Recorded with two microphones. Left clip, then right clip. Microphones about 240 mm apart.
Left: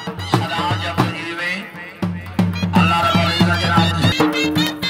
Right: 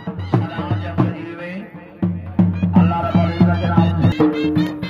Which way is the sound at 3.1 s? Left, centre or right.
Left.